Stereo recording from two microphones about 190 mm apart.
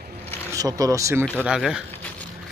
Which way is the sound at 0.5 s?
20° right (ahead or behind).